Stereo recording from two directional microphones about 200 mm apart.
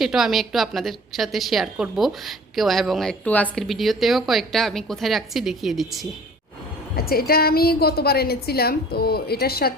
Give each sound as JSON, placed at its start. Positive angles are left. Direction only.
{"t": 0.0, "sound": "a woman's voice", "side_deg": 0}
{"t": 6.9, "sound": "a woman's voice", "side_deg": 50}